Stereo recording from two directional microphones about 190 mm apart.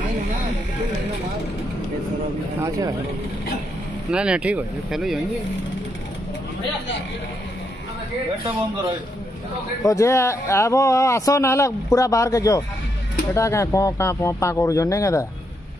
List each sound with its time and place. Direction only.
4.1 s speech: 5° right (ahead or behind)
9.8 s speech: 15° left (ahead or behind)